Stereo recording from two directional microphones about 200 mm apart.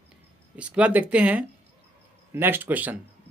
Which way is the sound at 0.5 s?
5° right (ahead or behind).